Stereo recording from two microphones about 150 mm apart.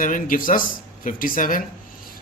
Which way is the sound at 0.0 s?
65° left (ahead or behind).